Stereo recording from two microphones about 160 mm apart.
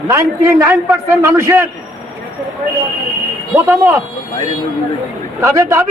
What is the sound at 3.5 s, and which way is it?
Speech, 15° right (ahead or behind).